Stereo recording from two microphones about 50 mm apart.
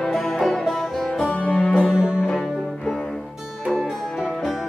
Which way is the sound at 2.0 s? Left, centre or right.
Centre.